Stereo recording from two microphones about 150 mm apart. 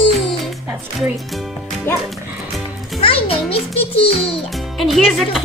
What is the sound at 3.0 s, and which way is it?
Music, 40° left (ahead or behind).